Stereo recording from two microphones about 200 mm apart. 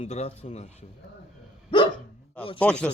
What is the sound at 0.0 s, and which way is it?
Speech, 30° left (ahead or behind).